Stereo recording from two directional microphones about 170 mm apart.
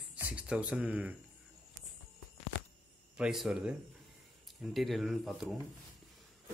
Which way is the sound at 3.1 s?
Centre (ahead or behind).